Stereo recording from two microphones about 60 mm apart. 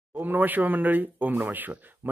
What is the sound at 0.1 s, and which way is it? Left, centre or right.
Speech, right.